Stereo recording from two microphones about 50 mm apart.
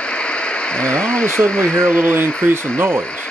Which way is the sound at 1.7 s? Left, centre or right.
Centre.